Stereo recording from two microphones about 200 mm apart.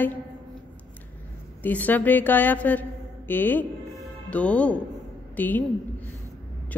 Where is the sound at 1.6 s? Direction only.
10° left (ahead or behind).